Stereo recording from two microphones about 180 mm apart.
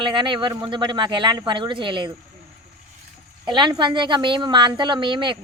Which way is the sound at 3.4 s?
25° right (ahead or behind).